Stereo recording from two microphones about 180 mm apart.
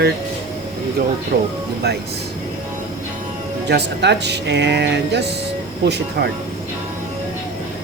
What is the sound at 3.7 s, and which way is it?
Speech, 70° right (ahead or behind).